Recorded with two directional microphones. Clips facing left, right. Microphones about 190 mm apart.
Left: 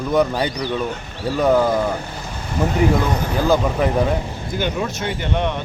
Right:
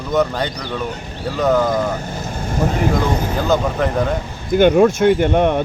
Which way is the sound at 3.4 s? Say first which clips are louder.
Left 1 dB; 10° left (ahead or behind).